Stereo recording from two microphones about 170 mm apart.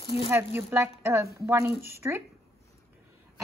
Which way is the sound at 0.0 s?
30° left (ahead or behind).